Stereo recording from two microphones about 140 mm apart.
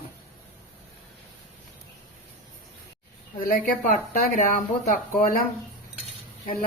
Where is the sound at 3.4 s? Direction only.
70° left (ahead or behind).